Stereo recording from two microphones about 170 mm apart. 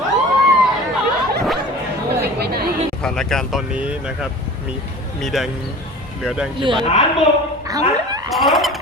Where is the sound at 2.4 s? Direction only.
65° right (ahead or behind).